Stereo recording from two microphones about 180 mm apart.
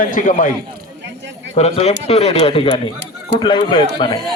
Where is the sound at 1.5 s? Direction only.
35° left (ahead or behind).